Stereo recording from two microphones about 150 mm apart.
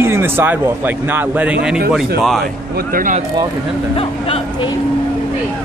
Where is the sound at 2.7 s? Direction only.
65° right (ahead or behind).